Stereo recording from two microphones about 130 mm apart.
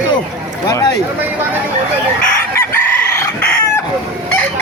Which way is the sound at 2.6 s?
20° left (ahead or behind).